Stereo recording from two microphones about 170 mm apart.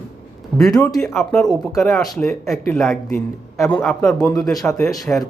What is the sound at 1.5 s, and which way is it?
Speech, 20° left (ahead or behind).